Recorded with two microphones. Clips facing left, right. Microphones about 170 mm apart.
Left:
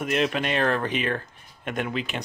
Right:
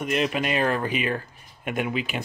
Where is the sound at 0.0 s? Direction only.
Centre (ahead or behind).